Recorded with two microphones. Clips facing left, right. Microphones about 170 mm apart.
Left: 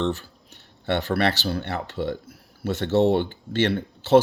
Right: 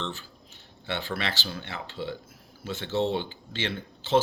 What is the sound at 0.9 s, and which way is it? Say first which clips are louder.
Speech: left 9 dB; 65° left (ahead or behind).